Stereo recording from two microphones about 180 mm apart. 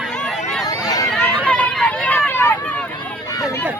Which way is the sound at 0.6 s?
20° left (ahead or behind).